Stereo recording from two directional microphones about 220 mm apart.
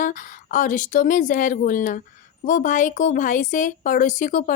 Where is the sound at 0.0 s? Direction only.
35° left (ahead or behind).